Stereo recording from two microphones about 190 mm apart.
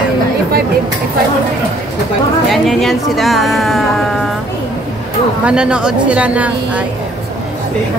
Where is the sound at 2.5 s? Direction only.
Centre (ahead or behind).